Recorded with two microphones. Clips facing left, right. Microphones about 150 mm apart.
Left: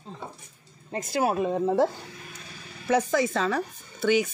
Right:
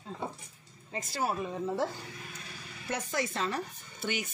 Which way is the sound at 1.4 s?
75° left (ahead or behind).